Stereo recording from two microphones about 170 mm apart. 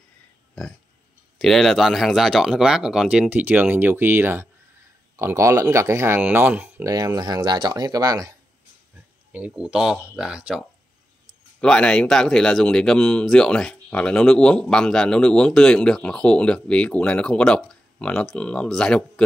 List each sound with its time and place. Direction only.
1.4 s speech: centre (ahead or behind); by 8.4 s 20° right (ahead or behind)
9.3 s speech: 5° right (ahead or behind)
11.6 s speech: 5° left (ahead or behind)